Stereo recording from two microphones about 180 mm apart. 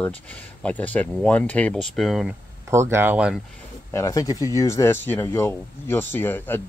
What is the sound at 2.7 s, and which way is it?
Speech, 15° right (ahead or behind).